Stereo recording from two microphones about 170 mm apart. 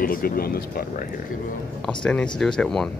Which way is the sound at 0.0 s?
60° left (ahead or behind).